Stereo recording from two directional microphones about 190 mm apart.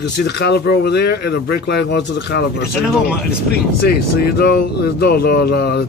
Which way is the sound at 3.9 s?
55° left (ahead or behind).